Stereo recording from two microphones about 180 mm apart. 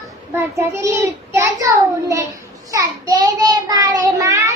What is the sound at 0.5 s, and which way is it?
Child singing, 15° right (ahead or behind).